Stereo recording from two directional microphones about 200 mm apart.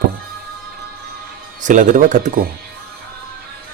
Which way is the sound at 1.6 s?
40° right (ahead or behind).